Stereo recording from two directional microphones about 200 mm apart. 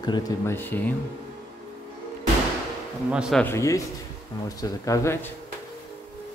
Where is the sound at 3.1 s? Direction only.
5° right (ahead or behind).